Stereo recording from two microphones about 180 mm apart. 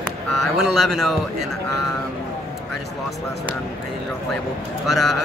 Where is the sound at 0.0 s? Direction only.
Centre (ahead or behind).